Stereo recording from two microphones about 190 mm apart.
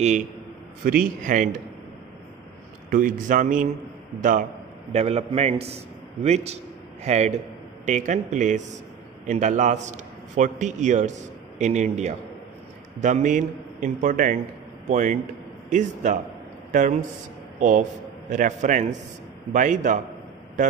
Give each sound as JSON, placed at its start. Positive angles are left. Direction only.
{"t": 1.0, "sound": "a man's voice", "side_deg": -40}
{"t": 2.9, "sound": "a man's voice", "side_deg": -45}